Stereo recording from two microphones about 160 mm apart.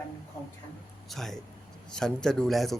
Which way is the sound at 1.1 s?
Centre (ahead or behind).